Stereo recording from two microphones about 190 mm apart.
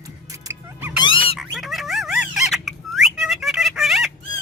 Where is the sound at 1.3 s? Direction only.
Centre (ahead or behind).